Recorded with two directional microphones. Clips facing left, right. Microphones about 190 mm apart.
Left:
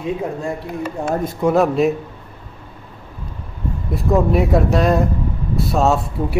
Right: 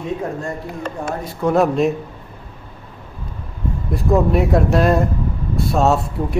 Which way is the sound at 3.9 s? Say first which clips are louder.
Even; centre (ahead or behind).